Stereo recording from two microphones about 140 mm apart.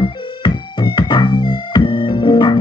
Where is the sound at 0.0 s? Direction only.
35° left (ahead or behind).